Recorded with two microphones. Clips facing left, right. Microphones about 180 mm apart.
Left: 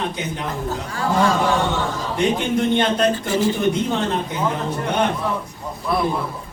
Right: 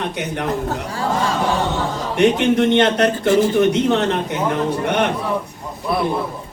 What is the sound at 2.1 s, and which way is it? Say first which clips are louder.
Speech: right 6 dB; 75° right (ahead or behind).